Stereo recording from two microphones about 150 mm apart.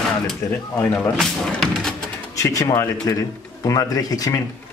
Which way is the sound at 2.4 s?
20° left (ahead or behind).